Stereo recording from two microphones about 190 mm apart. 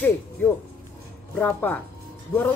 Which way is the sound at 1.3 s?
10° left (ahead or behind).